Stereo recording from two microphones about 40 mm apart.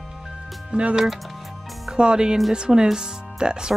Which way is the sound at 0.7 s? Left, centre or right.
Right.